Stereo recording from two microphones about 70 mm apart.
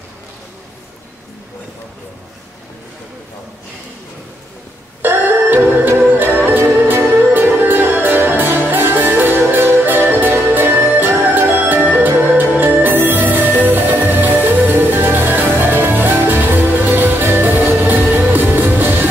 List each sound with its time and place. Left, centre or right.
5.0 s music: right